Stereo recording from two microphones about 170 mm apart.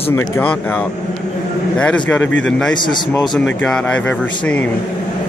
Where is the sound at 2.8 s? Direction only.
25° left (ahead or behind).